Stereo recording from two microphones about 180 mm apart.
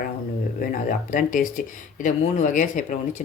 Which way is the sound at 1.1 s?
45° left (ahead or behind).